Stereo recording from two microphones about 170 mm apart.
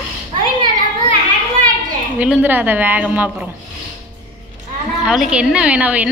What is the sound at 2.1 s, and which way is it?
A woman's voice, 5° right (ahead or behind).